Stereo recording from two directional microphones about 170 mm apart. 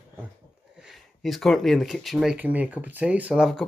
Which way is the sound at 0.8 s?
Centre (ahead or behind).